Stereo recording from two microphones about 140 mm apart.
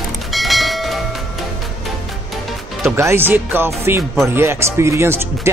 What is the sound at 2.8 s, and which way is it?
Speech, 20° right (ahead or behind).